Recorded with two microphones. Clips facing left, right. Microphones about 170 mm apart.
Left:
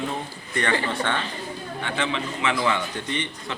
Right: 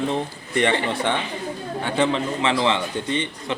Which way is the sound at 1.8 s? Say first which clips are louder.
Right 6 dB; 35° right (ahead or behind).